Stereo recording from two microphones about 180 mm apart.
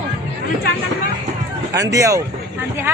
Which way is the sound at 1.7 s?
20° right (ahead or behind).